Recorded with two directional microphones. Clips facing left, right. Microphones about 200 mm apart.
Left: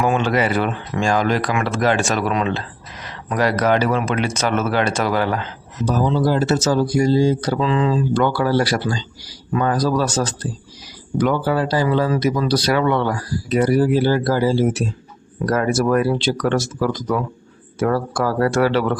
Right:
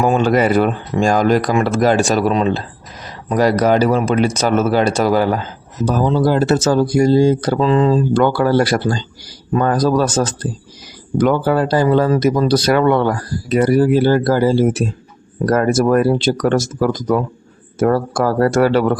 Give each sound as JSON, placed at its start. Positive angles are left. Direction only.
{"t": 0.0, "sound": "speech", "side_deg": -40}
{"t": 5.8, "sound": "speech", "side_deg": -55}